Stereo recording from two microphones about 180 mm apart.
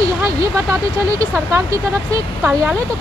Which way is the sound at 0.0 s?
20° right (ahead or behind).